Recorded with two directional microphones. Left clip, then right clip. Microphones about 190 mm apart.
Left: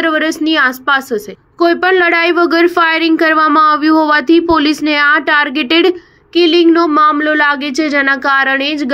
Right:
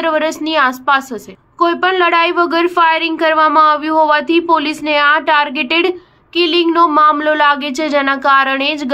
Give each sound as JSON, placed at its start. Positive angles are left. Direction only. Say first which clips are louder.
{"t": 0.0, "sound": "a woman's voice", "louder": "left 2 dB", "side_deg": 10}